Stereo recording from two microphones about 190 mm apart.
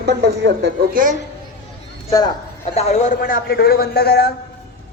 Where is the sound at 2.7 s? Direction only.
35° left (ahead or behind); by 4.3 s 60° left (ahead or behind).